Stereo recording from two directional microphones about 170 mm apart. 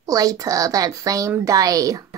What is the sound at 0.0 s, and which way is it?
A woman's voice, 20° right (ahead or behind).